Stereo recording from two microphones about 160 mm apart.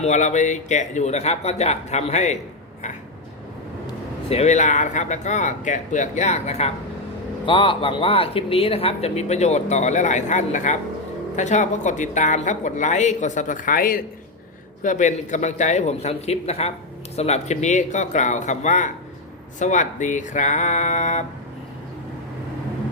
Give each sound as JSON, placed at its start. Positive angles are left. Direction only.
{"t": 0.0, "sound": "a woman's voice", "side_deg": 45}
{"t": 4.3, "sound": "a woman's voice", "side_deg": 45}
{"t": 14.8, "sound": "a woman's voice", "side_deg": 50}